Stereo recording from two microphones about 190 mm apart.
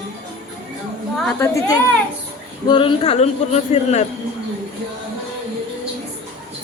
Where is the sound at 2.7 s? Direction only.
25° left (ahead or behind).